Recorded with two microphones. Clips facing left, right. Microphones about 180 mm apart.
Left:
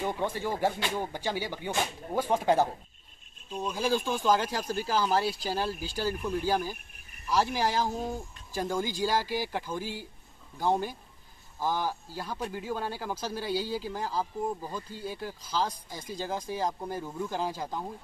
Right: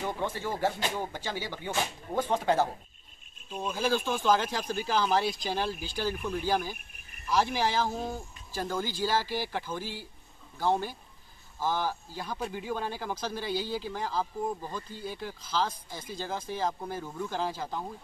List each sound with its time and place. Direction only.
0.0 s speech: 15° left (ahead or behind)
3.7 s speech: 15° left (ahead or behind)
12.4 s speech: 5° right (ahead or behind)
12.6 s speech: 5° left (ahead or behind)